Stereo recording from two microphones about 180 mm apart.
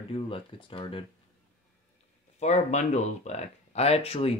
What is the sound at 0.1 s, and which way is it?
Speech, 30° left (ahead or behind).